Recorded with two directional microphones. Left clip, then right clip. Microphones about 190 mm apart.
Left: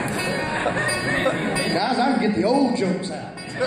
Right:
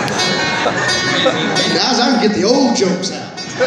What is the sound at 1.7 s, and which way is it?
A man's voice, 55° right (ahead or behind).